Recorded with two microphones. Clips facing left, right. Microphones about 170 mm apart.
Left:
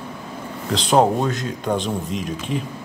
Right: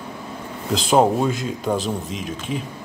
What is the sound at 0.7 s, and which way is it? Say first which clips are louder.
Speech: even; 5° right (ahead or behind).